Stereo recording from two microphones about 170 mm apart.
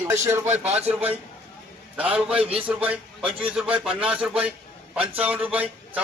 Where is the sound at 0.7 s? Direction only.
40° right (ahead or behind).